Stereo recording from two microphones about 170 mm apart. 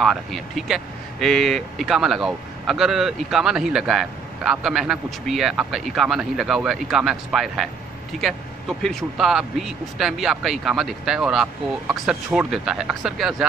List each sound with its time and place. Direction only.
0.0 s speech: centre (ahead or behind)